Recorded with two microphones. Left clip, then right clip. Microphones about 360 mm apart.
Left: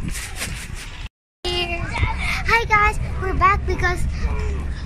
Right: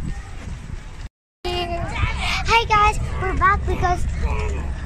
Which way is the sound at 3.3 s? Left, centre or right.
Centre.